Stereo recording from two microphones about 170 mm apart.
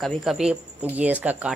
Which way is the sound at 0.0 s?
Centre (ahead or behind).